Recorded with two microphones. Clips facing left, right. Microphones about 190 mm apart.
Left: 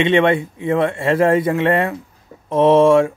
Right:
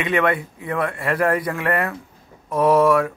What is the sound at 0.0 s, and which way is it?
A man's voice, 25° left (ahead or behind).